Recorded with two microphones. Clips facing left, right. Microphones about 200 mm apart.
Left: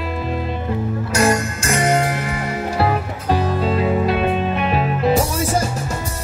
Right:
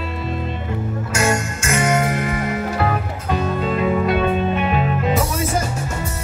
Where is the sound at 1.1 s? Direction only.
35° left (ahead or behind).